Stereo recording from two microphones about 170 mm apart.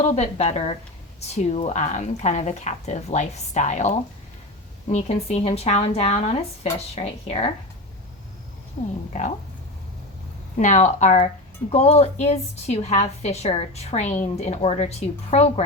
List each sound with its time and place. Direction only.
0.0 s a woman's voice: 40° left (ahead or behind)
8.8 s a woman's voice: 45° left (ahead or behind)
10.6 s a woman's voice: 45° left (ahead or behind)